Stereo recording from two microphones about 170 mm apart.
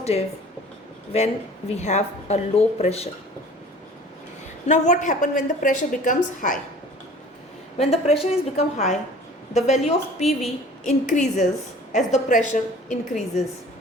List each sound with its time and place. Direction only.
0.0 s speech: 35° left (ahead or behind)
4.6 s a woman's voice: 45° left (ahead or behind)
7.8 s a woman's voice: 40° left (ahead or behind)